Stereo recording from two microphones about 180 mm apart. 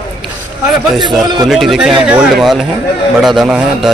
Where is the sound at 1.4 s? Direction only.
Centre (ahead or behind).